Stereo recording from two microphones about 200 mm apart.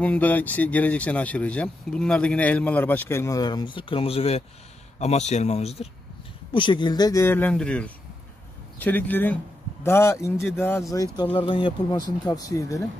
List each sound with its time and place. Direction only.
0.0 s speech: 10° left (ahead or behind)